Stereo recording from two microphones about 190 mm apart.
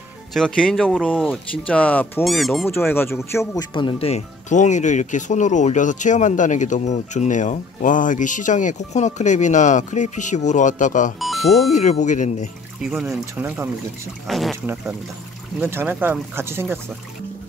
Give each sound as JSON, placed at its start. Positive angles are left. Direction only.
{"t": 0.3, "sound": "speech", "side_deg": 5}
{"t": 2.9, "sound": "a man's voice", "side_deg": 10}
{"t": 3.7, "sound": "speech", "side_deg": 30}
{"t": 12.8, "sound": "speech", "side_deg": -5}
{"t": 15.6, "sound": "speech", "side_deg": -10}